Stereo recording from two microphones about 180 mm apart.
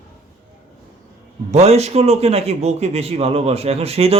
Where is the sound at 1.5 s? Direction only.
35° right (ahead or behind).